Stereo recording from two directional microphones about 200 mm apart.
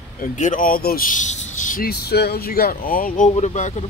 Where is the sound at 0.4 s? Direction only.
40° left (ahead or behind).